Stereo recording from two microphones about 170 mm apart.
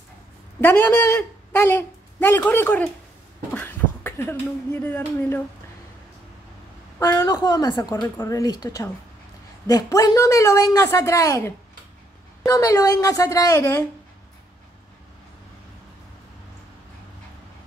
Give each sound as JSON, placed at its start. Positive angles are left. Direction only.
{"t": 0.6, "sound": "speech", "side_deg": 10}
{"t": 7.0, "sound": "a woman's voice", "side_deg": 20}